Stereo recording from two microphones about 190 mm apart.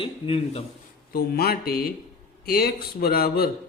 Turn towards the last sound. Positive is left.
turn(degrees=50)  # may be behind; listen again after turning